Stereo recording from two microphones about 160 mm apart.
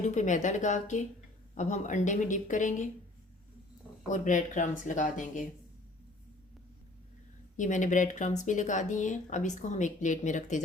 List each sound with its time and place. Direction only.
0.0 s speech: 50° left (ahead or behind)
4.1 s speech: 50° left (ahead or behind)
7.5 s speech: 50° left (ahead or behind)